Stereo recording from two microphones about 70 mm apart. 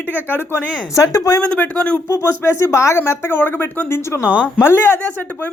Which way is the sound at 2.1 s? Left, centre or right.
Left.